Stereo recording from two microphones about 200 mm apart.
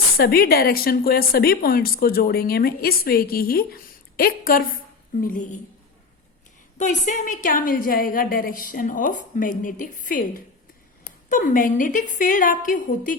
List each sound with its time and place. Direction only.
0.2 s a woman's voice: 50° left (ahead or behind)
6.7 s a woman's voice: 40° left (ahead or behind)